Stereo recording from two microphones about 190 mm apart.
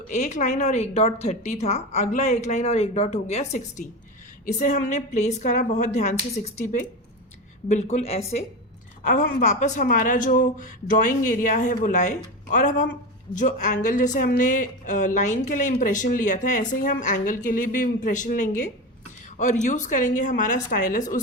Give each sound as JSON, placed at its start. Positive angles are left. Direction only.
{"t": 0.1, "sound": "a woman's voice", "side_deg": 40}